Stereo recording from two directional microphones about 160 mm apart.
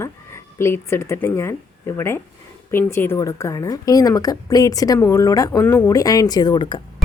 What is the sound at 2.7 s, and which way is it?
A woman's voice, 15° left (ahead or behind).